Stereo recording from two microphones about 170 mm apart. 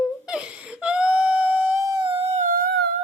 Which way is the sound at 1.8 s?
25° right (ahead or behind).